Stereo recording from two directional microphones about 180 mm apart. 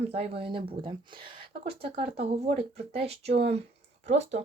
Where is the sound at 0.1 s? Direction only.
30° right (ahead or behind).